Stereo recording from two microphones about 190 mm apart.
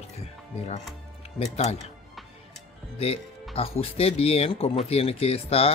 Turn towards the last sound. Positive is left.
turn(degrees=30)  # may be behind; listen again after turning